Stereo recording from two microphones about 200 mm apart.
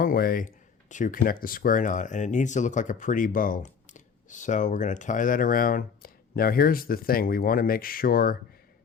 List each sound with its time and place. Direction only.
0.0 s speech: 45° left (ahead or behind)